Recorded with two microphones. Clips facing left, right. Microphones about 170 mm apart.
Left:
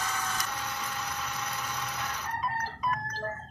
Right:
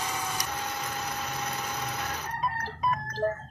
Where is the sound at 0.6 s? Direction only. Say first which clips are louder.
Right 2 dB; 40° right (ahead or behind).